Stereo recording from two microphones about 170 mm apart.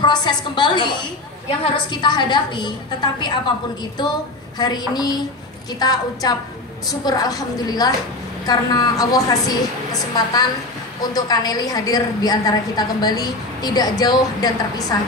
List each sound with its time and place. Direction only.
0.0 s a woman's voice: 25° left (ahead or behind)
4.6 s a woman's voice: 25° left (ahead or behind)